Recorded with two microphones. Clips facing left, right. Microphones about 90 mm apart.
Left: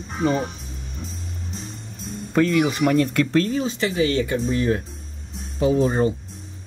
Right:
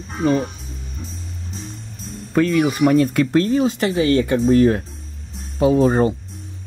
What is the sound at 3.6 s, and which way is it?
Speech, 55° right (ahead or behind).